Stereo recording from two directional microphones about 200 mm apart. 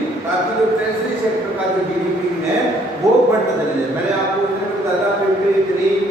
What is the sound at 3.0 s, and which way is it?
Speech, 15° right (ahead or behind).